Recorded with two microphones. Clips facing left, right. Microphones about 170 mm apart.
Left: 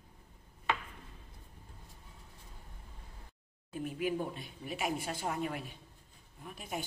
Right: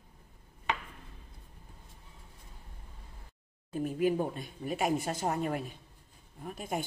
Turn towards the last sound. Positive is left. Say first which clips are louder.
# right 5 dB
turn(degrees=-45)  # may be behind; listen again after turning